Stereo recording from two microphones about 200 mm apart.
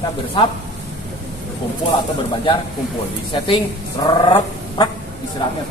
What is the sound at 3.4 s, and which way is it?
Speech, 25° left (ahead or behind).